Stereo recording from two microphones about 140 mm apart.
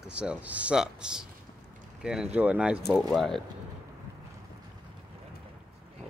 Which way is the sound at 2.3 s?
10° right (ahead or behind).